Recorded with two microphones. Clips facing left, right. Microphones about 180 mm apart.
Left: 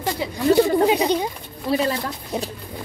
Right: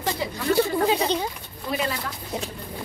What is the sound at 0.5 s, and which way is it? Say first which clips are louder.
Speech: left 5 dB; 20° left (ahead or behind).